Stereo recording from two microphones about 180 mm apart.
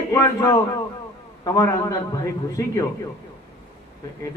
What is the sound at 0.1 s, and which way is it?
A man's voice, 15° left (ahead or behind).